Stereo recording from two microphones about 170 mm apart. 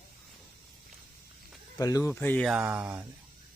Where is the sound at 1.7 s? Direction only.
20° left (ahead or behind).